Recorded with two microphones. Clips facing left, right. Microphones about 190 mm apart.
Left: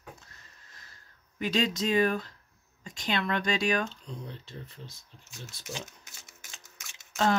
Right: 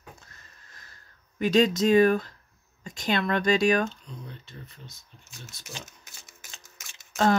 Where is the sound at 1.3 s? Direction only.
45° right (ahead or behind).